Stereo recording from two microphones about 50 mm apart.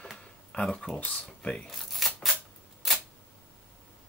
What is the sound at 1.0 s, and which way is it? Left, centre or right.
Speech, left.